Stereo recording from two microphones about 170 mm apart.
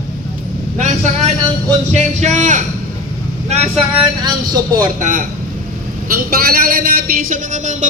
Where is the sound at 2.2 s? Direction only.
45° right (ahead or behind).